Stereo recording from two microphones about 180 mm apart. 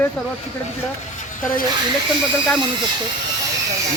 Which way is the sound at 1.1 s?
50° left (ahead or behind).